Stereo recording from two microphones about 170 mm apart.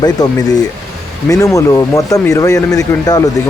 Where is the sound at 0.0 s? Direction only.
20° left (ahead or behind).